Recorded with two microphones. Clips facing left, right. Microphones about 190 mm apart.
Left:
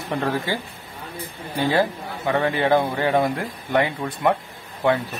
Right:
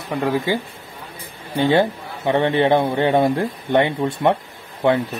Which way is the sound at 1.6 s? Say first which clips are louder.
Right 4 dB; 25° right (ahead or behind).